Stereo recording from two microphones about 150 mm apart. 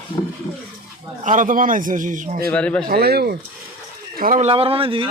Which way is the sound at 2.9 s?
90° right.